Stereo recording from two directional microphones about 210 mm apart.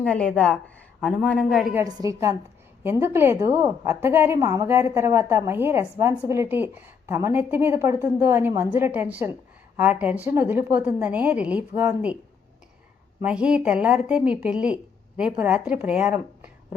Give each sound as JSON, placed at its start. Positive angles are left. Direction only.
{"t": 0.0, "sound": "speech", "side_deg": 5}
{"t": 1.8, "sound": "a woman's voice", "side_deg": -15}
{"t": 13.2, "sound": "speech", "side_deg": -5}